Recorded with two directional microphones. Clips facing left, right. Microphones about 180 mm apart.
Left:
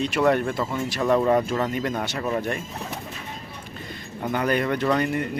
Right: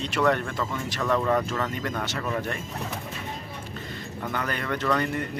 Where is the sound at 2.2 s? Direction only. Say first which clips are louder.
Left 4 dB; 25° left (ahead or behind).